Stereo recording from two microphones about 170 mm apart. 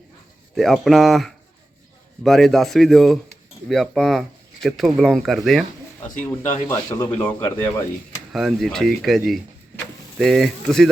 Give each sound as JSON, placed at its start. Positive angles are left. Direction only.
{"t": 0.5, "sound": "speech", "side_deg": 0}
{"t": 6.1, "sound": "speech", "side_deg": 50}
{"t": 6.7, "sound": "a man's voice", "side_deg": 15}
{"t": 8.3, "sound": "speech", "side_deg": 0}